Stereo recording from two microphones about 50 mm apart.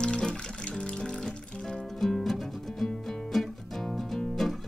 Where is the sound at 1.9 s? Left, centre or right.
Centre.